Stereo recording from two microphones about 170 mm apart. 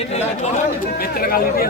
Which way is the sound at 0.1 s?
40° left (ahead or behind).